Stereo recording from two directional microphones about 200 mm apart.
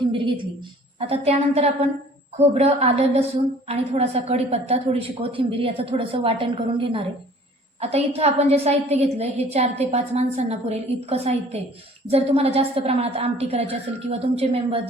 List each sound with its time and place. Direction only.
0.0 s a woman's voice: 25° right (ahead or behind)